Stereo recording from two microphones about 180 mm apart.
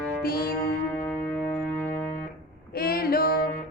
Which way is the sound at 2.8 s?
55° left (ahead or behind).